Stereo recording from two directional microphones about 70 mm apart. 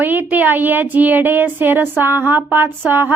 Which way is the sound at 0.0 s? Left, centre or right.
Right.